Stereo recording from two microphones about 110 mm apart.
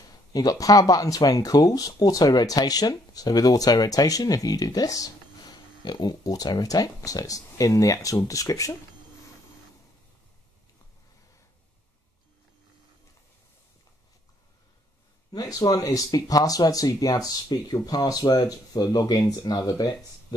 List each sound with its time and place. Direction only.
0.3 s speech: 35° left (ahead or behind)
15.3 s speech: 35° left (ahead or behind)